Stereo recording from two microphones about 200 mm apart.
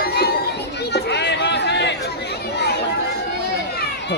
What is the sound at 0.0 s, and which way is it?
Children playing, 50° left (ahead or behind).